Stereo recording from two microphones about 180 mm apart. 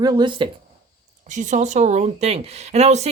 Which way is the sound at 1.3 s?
45° right (ahead or behind).